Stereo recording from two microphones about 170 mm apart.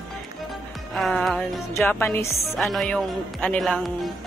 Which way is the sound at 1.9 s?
10° left (ahead or behind).